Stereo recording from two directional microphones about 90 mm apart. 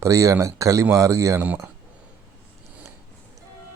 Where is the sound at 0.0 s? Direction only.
35° right (ahead or behind).